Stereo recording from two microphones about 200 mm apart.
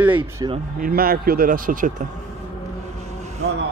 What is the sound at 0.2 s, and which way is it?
Speech, 25° right (ahead or behind).